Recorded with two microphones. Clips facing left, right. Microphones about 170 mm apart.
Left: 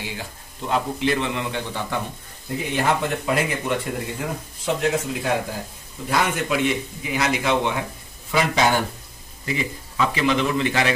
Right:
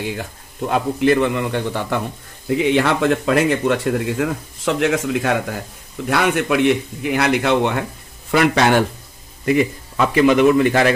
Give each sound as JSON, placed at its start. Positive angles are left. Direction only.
{"t": 0.0, "sound": "speech", "side_deg": -60}
{"t": 2.5, "sound": "speech", "side_deg": -75}
{"t": 9.5, "sound": "a man's voice", "side_deg": -55}